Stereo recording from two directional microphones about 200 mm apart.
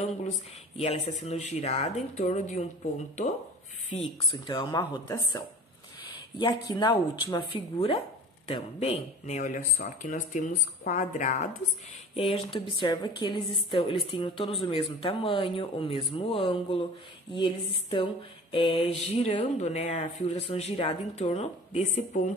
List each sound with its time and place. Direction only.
0.7 s speech: 35° left (ahead or behind)
4.3 s a woman's voice: 20° left (ahead or behind)